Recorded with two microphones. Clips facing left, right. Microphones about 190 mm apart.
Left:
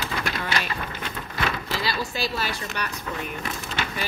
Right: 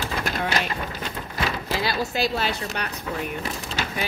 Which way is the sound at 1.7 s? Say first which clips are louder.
Right 3 dB; 55° right (ahead or behind).